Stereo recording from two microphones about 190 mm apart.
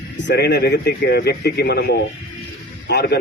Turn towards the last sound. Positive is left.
turn(degrees=60)  # may be behind; listen again after turning